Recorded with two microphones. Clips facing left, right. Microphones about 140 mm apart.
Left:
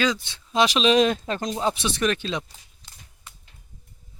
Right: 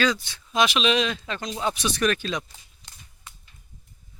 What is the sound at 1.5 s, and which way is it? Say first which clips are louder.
Speech: right 1 dB; 25° left (ahead or behind).